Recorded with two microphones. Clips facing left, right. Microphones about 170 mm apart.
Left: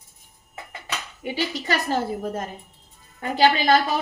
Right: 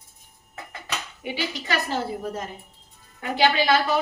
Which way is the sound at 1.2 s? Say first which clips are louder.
Left 4 dB; 45° left (ahead or behind).